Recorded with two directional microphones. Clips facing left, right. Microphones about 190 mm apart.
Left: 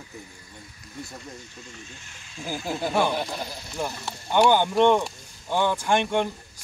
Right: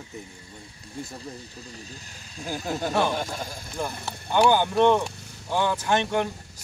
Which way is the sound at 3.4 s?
50° right (ahead or behind).